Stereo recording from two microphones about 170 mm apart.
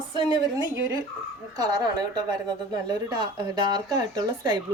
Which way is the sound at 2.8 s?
25° right (ahead or behind).